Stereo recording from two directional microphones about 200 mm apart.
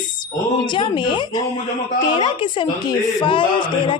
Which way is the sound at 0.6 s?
25° left (ahead or behind).